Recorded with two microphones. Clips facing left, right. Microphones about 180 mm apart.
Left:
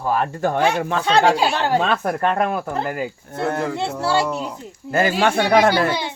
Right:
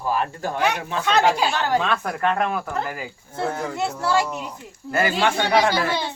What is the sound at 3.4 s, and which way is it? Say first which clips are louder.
Speech: left 3 dB; 65° left (ahead or behind).